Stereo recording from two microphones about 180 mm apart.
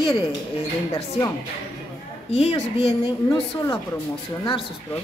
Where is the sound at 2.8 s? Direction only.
20° left (ahead or behind).